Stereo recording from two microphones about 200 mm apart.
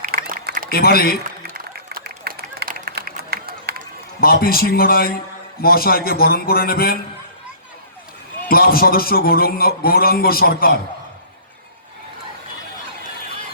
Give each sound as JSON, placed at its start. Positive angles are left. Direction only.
{"t": 0.0, "sound": "a sound", "side_deg": -45}
{"t": 0.7, "sound": "a man's voice", "side_deg": 50}
{"t": 1.5, "sound": "run", "side_deg": -45}
{"t": 4.2, "sound": "a man's voice", "side_deg": 50}
{"t": 8.4, "sound": "a man's voice", "side_deg": 50}